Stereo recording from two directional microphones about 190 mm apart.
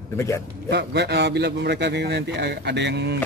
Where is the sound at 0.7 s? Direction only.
60° right (ahead or behind).